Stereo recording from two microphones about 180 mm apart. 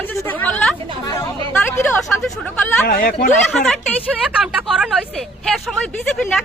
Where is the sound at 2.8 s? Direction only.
45° left (ahead or behind).